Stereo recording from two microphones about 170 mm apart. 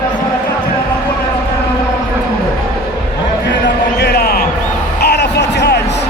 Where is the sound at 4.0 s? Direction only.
70° left (ahead or behind); by 6.0 s 85° left.